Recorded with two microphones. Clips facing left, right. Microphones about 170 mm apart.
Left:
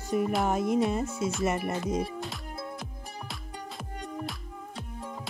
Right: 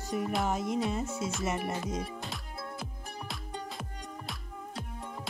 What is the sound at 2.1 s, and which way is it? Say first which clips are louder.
Music: left 4 dB; centre (ahead or behind).